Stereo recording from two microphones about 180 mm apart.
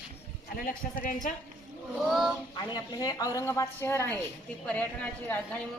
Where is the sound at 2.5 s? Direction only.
25° left (ahead or behind).